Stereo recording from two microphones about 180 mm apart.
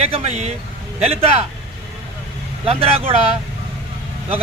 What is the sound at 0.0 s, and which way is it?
A man's voice, 35° right (ahead or behind).